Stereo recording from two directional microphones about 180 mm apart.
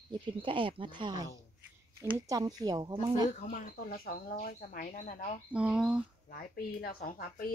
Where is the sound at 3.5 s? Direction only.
55° left (ahead or behind).